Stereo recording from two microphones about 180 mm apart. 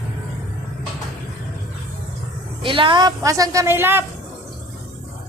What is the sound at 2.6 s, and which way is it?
A woman's voice, 30° right (ahead or behind).